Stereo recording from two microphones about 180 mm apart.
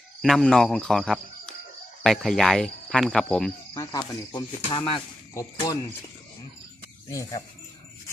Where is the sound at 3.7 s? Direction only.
20° left (ahead or behind).